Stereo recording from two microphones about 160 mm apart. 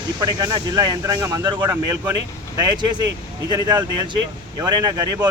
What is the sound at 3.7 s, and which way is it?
A man's voice, 25° right (ahead or behind).